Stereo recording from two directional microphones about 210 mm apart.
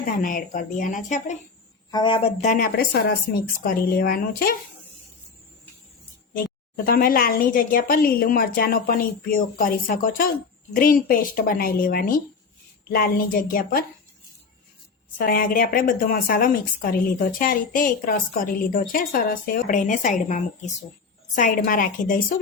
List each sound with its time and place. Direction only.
0.0 s a woman's voice: 40° left (ahead or behind)
1.9 s a woman's voice: 20° left (ahead or behind); by 4.5 s 45° left (ahead or behind)
6.8 s a woman's voice: 45° left (ahead or behind)
15.3 s a woman's voice: 45° left (ahead or behind)